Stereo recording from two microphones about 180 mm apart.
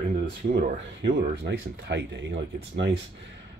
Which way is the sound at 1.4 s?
75° right (ahead or behind).